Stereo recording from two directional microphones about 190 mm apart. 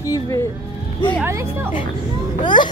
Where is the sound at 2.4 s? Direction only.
25° left (ahead or behind).